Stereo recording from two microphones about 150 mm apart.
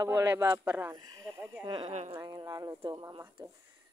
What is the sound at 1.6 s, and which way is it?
Speech, 30° right (ahead or behind).